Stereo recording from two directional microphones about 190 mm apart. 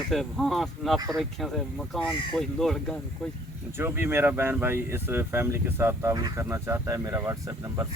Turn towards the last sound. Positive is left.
turn(degrees=-15)  # may be behind; listen again after turning